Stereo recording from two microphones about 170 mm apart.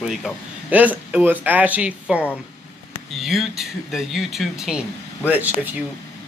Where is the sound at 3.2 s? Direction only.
Centre (ahead or behind).